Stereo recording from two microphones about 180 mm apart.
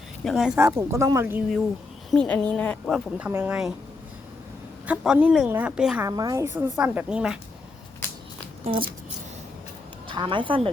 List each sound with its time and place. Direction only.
0.3 s a woman's voice: 5° right (ahead or behind)
0.6 s speech: 15° right (ahead or behind)
2.0 s speech: 5° left (ahead or behind)
3.2 s speech: 10° right (ahead or behind)
4.9 s a woman's voice: 5° right (ahead or behind)
6.1 s a woman's voice: 20° right (ahead or behind)
8.7 s speech: 35° right (ahead or behind)
10.1 s a woman's voice: 25° right (ahead or behind)